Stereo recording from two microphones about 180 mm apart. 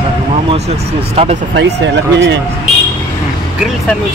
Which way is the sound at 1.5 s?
85° right.